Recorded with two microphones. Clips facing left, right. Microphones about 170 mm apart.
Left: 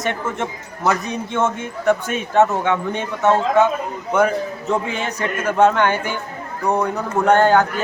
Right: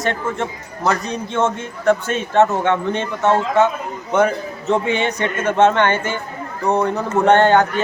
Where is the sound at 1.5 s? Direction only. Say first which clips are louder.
Right 1 dB; 15° left (ahead or behind).